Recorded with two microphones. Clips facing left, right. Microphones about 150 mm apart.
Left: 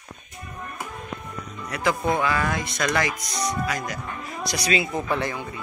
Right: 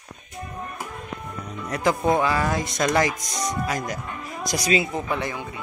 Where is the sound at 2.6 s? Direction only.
45° right (ahead or behind).